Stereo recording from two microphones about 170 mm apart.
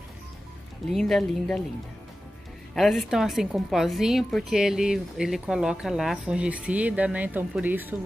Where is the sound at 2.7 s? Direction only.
Centre (ahead or behind).